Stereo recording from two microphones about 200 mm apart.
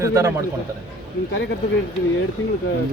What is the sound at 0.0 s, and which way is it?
Speech, 15° right (ahead or behind).